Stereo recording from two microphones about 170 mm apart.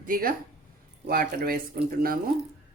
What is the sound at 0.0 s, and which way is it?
Speech, 55° right (ahead or behind).